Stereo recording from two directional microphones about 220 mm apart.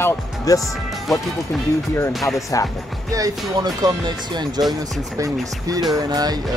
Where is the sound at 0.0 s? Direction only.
15° left (ahead or behind).